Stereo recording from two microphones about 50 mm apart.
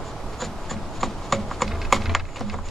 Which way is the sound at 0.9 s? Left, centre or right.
Centre.